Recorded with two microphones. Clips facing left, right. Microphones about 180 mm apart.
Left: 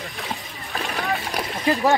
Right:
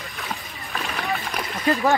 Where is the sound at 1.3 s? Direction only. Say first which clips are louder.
Left 2 dB; 30° left (ahead or behind).